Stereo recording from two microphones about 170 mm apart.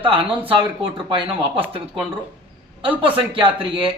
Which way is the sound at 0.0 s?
35° right (ahead or behind).